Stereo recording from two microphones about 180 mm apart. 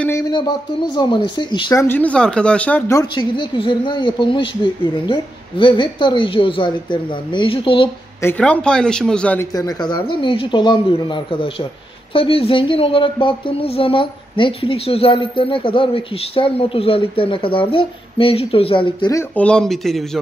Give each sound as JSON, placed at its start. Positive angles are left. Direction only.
{"t": 0.3, "sound": "speech", "side_deg": 25}
{"t": 3.0, "sound": "speech", "side_deg": 25}
{"t": 8.2, "sound": "speech", "side_deg": 10}
{"t": 9.6, "sound": "speech", "side_deg": 20}
{"t": 19.3, "sound": "speech", "side_deg": 5}